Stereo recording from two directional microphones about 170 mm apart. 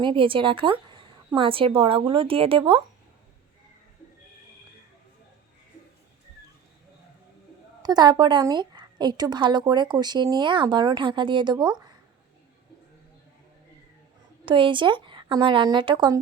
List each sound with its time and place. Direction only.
0.0 s a woman's voice: 30° right (ahead or behind)
7.8 s a woman's voice: 25° right (ahead or behind)
14.4 s a woman's voice: 30° right (ahead or behind)